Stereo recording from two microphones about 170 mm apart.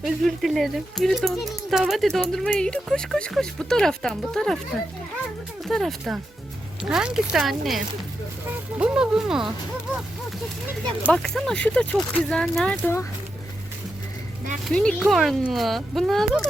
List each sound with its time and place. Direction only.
0.0 s speech: centre (ahead or behind)
5.6 s speech: centre (ahead or behind)
8.8 s speech: 5° right (ahead or behind)
11.1 s speech: 5° left (ahead or behind)
14.7 s speech: 5° left (ahead or behind)